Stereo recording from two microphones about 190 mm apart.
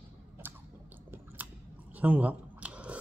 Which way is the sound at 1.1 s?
10° right (ahead or behind).